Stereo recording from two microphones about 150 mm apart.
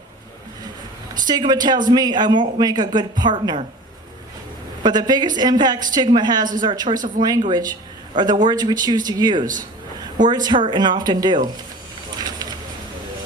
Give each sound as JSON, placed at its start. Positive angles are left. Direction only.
{"t": 1.3, "sound": "speech", "side_deg": -25}
{"t": 4.8, "sound": "speech", "side_deg": -30}
{"t": 12.1, "sound": "a sound", "side_deg": -25}